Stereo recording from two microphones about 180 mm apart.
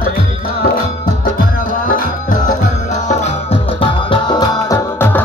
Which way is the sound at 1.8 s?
50° left (ahead or behind).